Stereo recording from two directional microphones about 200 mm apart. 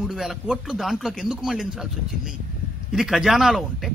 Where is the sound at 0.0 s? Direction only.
Centre (ahead or behind).